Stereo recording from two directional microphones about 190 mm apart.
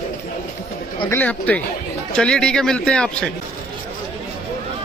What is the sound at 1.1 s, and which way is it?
Speech, 10° left (ahead or behind).